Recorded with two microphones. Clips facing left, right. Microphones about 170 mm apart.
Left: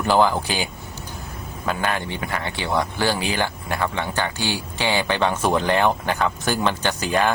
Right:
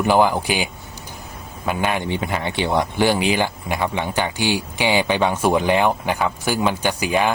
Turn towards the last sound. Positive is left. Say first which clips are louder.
# right 1 dB
turn(degrees=-10)  # may be behind; listen again after turning